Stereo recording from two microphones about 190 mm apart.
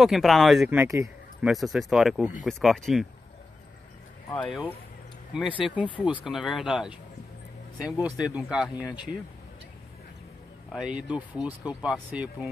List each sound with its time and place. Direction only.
0.0 s speech: centre (ahead or behind); by 1.1 s 15° right (ahead or behind)
1.4 s speech: centre (ahead or behind)
4.4 s speech: 5° left (ahead or behind)
10.7 s speech: 5° right (ahead or behind)